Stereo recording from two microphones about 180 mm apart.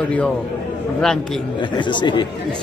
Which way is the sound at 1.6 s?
25° left (ahead or behind).